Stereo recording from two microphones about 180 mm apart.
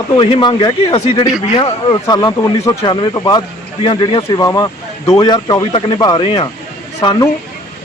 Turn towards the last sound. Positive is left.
turn(degrees=20)  # may be behind; listen again after turning